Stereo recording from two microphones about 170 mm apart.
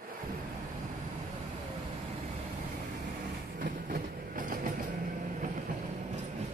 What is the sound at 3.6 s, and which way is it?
Train, 55° right (ahead or behind).